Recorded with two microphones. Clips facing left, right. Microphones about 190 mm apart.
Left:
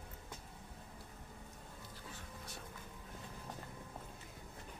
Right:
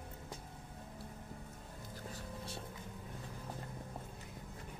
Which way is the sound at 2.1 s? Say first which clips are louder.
Right 6 dB; 30° right (ahead or behind).